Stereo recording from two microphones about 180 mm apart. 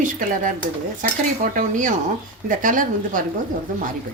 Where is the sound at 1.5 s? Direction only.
45° right (ahead or behind).